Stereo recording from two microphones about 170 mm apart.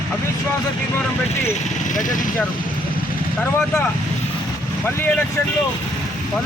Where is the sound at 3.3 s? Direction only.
10° left (ahead or behind).